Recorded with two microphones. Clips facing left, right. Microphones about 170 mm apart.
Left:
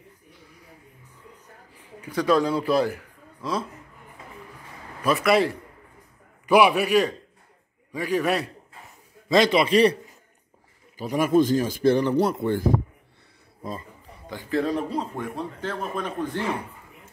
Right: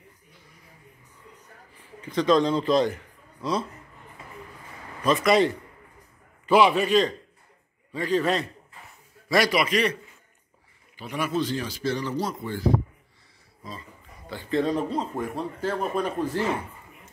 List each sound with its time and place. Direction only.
1.8 s a man's voice: 10° left (ahead or behind)
5.0 s a man's voice: 5° left (ahead or behind)
9.3 s a man's voice: 25° left (ahead or behind); by 13.8 s 50° left (ahead or behind)
14.5 s a man's voice: centre (ahead or behind)